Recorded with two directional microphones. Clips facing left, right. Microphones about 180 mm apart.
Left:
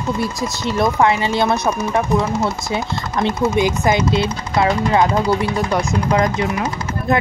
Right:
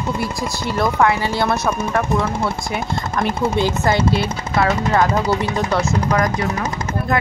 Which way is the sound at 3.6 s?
15° left (ahead or behind).